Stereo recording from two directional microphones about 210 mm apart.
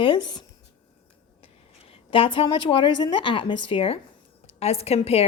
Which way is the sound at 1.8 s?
25° left (ahead or behind).